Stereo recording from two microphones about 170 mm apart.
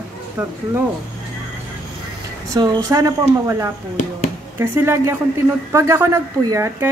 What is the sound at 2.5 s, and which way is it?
A woman's voice, 25° right (ahead or behind).